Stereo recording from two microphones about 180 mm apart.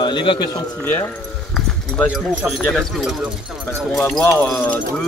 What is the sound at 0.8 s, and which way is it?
Speech, 10° left (ahead or behind).